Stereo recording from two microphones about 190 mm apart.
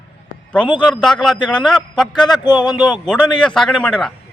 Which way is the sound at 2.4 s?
20° left (ahead or behind).